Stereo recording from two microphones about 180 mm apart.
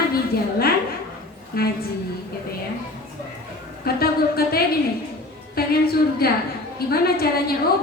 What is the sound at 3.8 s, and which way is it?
A woman's voice, 55° left (ahead or behind).